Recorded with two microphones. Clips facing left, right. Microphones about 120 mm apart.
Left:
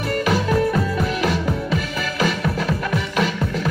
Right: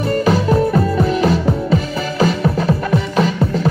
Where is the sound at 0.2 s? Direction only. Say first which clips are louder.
Right 3 dB; 35° right (ahead or behind).